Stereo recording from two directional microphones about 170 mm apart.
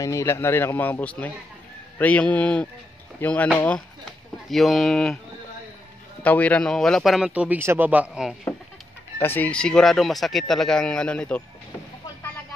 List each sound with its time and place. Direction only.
0.0 s speech: 15° left (ahead or behind)
4.5 s speech: centre (ahead or behind)
6.2 s speech: 10° left (ahead or behind)
9.2 s speech: 10° left (ahead or behind)